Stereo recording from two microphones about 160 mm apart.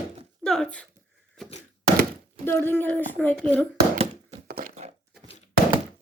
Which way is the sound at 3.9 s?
40° right (ahead or behind).